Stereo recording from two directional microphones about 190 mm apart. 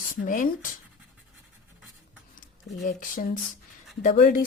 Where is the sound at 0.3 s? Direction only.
45° left (ahead or behind).